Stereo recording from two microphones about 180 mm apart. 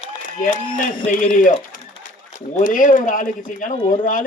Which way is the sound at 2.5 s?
45° left (ahead or behind).